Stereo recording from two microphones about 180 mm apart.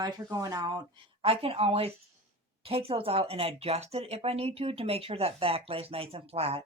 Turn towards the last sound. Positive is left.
turn(degrees=-35)  # may be behind; listen again after turning